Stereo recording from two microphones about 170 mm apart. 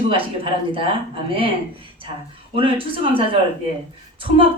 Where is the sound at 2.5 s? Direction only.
30° right (ahead or behind).